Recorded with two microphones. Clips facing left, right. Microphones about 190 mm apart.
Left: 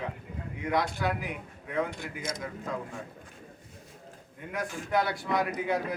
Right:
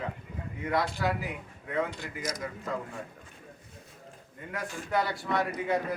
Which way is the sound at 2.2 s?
25° left (ahead or behind).